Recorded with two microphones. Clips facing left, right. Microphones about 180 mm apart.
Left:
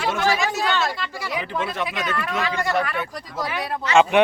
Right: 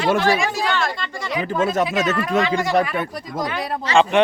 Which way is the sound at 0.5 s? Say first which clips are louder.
Right 1 dB; centre (ahead or behind).